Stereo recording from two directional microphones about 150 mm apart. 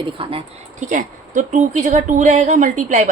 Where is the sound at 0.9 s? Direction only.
55° right (ahead or behind).